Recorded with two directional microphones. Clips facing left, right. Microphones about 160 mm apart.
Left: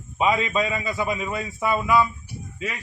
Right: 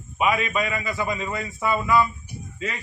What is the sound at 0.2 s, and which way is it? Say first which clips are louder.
A man's voice: left 1 dB; 25° left (ahead or behind).